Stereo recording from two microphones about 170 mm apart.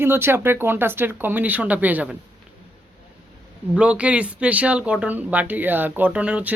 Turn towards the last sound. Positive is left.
turn(degrees=-5)  # may be behind; listen again after turning